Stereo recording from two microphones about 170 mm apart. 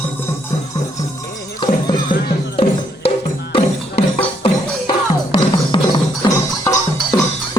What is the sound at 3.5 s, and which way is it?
Music, 35° left (ahead or behind).